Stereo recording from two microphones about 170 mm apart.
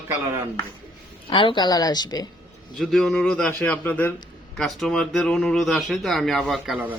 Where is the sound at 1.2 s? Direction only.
30° left (ahead or behind).